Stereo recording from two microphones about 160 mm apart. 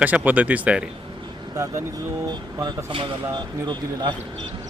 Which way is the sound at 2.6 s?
30° right (ahead or behind).